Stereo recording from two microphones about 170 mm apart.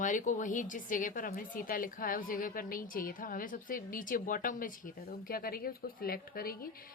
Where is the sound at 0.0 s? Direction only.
50° left (ahead or behind).